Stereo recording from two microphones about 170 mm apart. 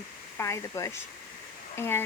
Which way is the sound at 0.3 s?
15° left (ahead or behind).